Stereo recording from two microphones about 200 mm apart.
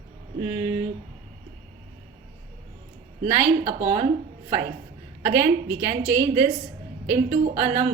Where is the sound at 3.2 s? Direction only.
30° right (ahead or behind).